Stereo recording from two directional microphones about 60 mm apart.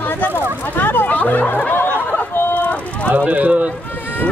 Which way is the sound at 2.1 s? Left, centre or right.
Left.